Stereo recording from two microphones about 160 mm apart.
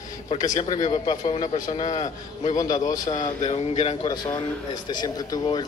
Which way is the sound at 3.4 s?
45° left (ahead or behind).